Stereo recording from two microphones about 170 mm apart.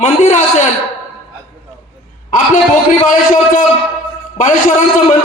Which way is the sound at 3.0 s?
50° left (ahead or behind).